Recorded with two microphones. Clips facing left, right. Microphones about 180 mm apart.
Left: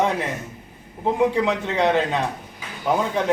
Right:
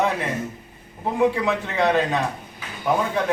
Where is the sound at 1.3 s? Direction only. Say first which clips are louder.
Left 2 dB; 20° left (ahead or behind).